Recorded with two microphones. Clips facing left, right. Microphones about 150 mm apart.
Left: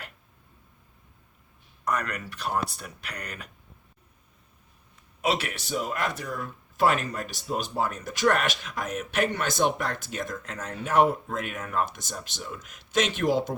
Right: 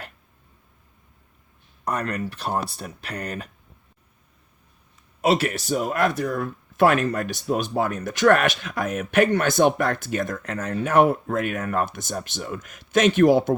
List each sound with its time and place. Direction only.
1.8 s speech: 30° right (ahead or behind)
5.2 s speech: 40° right (ahead or behind); by 13.6 s 55° right (ahead or behind)